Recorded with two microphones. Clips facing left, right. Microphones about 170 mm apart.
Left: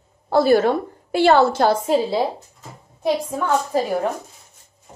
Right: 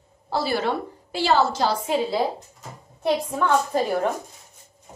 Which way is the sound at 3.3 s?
10° left (ahead or behind).